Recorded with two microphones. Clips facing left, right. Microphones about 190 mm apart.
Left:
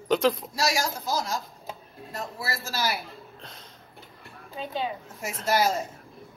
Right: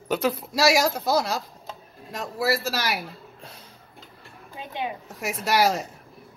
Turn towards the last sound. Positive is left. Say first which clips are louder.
# right 2 dB
turn(degrees=-80)